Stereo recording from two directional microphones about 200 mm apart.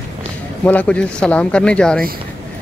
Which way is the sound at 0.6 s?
5° left (ahead or behind).